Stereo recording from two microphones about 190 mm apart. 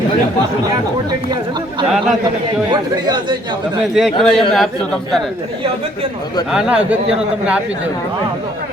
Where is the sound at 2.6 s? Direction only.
25° right (ahead or behind).